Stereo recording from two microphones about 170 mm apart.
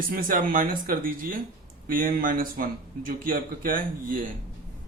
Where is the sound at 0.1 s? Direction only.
55° right (ahead or behind).